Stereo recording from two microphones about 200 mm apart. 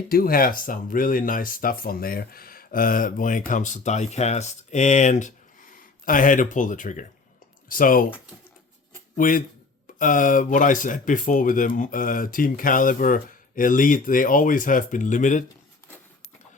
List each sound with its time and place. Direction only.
0.1 s speech: 45° left (ahead or behind)
9.1 s speech: 45° left (ahead or behind)